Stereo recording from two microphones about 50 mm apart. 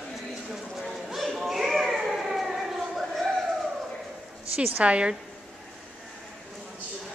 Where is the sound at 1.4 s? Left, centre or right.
Centre.